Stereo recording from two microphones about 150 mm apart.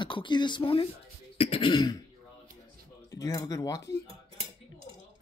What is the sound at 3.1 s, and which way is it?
Speech, 25° left (ahead or behind).